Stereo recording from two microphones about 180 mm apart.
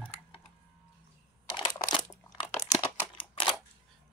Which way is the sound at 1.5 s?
25° left (ahead or behind).